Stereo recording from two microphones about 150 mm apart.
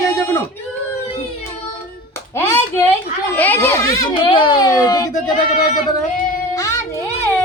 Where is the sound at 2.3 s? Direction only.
15° left (ahead or behind).